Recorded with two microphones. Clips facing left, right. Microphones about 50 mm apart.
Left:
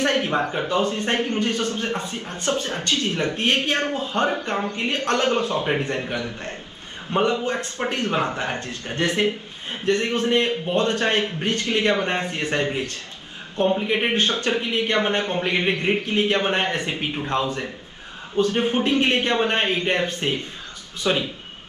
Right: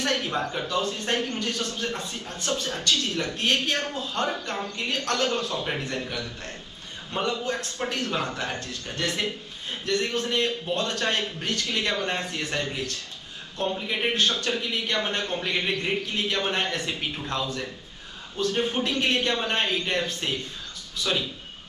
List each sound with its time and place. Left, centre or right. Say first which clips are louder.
0.0 s a man's voice: left 5 dB; left